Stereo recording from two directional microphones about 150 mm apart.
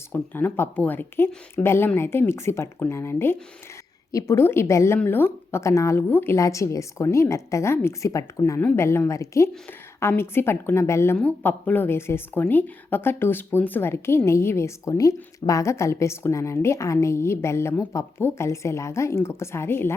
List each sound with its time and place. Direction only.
0.1 s a woman's voice: 15° left (ahead or behind)